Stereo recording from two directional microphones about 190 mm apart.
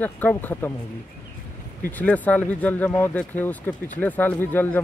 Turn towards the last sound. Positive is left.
turn(degrees=10)  # may be behind; listen again after turning